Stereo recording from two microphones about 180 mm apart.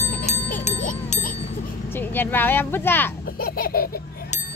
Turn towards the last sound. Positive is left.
turn(degrees=55)  # may be behind; listen again after turning